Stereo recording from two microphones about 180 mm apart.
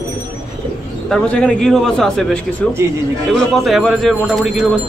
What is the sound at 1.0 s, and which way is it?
Speech, 5° left (ahead or behind).